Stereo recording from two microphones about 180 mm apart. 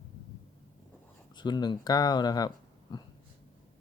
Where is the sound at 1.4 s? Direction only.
25° left (ahead or behind).